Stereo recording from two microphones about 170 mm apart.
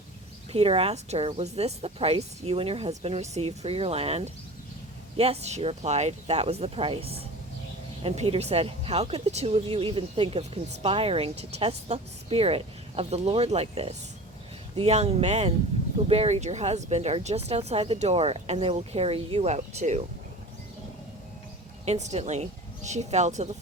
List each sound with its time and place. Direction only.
0.5 s speech: 35° right (ahead or behind)
21.8 s speech: 40° right (ahead or behind)